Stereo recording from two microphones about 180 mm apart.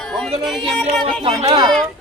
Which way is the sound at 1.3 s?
25° right (ahead or behind).